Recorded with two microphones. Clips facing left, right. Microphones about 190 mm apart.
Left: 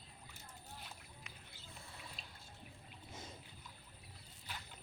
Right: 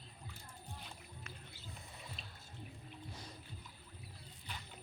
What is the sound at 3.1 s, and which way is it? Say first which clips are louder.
Music: left 3 dB; 25° left (ahead or behind).